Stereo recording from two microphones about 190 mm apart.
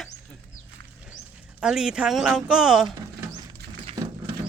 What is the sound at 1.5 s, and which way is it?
Speech, 5° right (ahead or behind).